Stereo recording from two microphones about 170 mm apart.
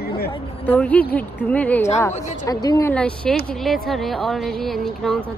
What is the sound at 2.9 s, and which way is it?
A woman's voice, 5° left (ahead or behind).